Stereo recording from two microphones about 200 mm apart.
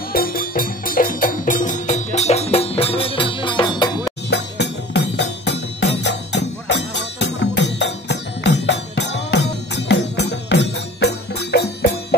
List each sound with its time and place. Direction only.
0.1 s music: 45° left (ahead or behind); by 3.9 s 20° left (ahead or behind)
4.3 s music: 60° left (ahead or behind)